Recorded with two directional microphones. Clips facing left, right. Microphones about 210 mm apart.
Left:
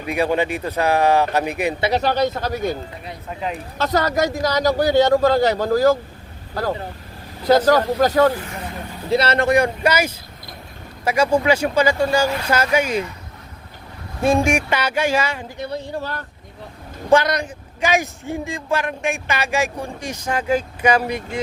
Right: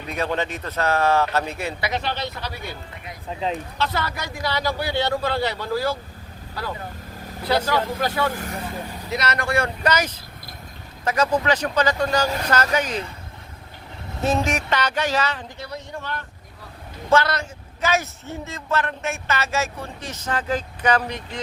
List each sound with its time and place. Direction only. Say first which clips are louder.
0.1 s a man's voice: left 6 dB; 10° left (ahead or behind)
1.8 s a man's voice: left 10 dB; 40° left (ahead or behind)
3.2 s speech: right 1 dB; 25° right (ahead or behind)
3.8 s a man's voice: left 8 dB; 40° left (ahead or behind)
9.0 s speech: left 9 dB; 30° left (ahead or behind)
9.5 s a man's voice: left 3 dB; 15° left (ahead or behind)
14.2 s a man's voice: left 5 dB; 10° left (ahead or behind)
15.6 s speech: left 8 dB; 30° left (ahead or behind)
17.1 s a man's voice: left 4 dB; 15° left (ahead or behind)